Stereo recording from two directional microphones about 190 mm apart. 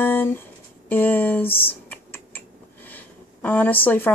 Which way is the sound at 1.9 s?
10° left (ahead or behind).